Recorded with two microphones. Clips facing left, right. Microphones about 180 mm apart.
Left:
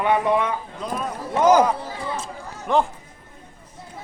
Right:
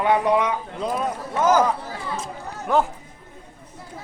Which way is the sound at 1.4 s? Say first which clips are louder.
Left 3 dB; 15° left (ahead or behind).